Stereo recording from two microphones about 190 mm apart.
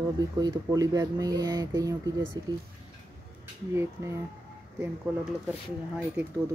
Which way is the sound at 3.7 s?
15° right (ahead or behind).